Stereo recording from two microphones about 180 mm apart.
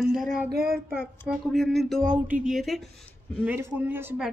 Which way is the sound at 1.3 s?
Centre (ahead or behind).